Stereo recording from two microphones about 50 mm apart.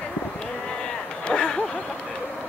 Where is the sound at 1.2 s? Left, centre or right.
Centre.